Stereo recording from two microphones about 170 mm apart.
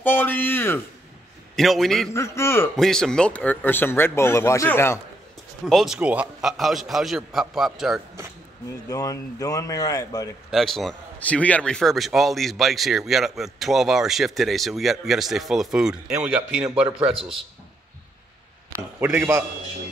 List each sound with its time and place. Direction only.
0.0 s a sound: 10° left (ahead or behind)
1.6 s a man's voice: centre (ahead or behind)
2.1 s speech: 15° left (ahead or behind)
2.7 s speech: centre (ahead or behind)
5.7 s a man's voice: centre (ahead or behind)
8.8 s speech: 20° left (ahead or behind)
10.5 s a man's voice: centre (ahead or behind)
17.1 s a man's voice: 30° right (ahead or behind)
18.9 s a man's voice: 10° right (ahead or behind)